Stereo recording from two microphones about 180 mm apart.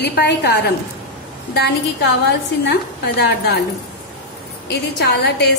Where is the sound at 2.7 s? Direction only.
65° left (ahead or behind).